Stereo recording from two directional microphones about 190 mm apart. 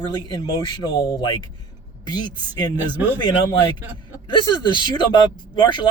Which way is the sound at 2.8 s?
10° right (ahead or behind).